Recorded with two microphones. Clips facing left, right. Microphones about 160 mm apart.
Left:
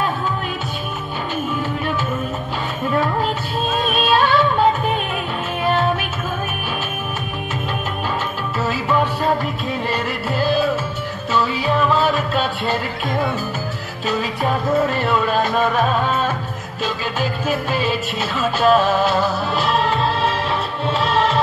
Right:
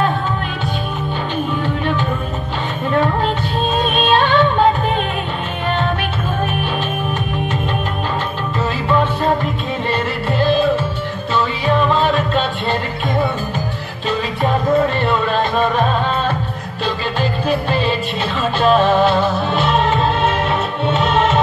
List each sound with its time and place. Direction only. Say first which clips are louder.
3.8 s music: right 1 dB; 5° left (ahead or behind)
9.8 s music: right 5 dB; 5° left (ahead or behind)
15.0 s music: right 1 dB; 5° left (ahead or behind)
17.2 s music: right 3 dB; 10° left (ahead or behind)
19.0 s music: right 3 dB; 40° left (ahead or behind)
19.5 s music: right 3 dB; 5° left (ahead or behind)